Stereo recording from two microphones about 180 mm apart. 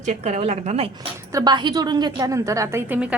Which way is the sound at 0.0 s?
40° right (ahead or behind).